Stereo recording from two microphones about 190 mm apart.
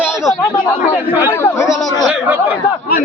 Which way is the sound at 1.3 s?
15° left (ahead or behind).